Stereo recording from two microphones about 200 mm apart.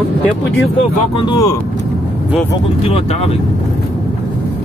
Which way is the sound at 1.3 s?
20° left (ahead or behind).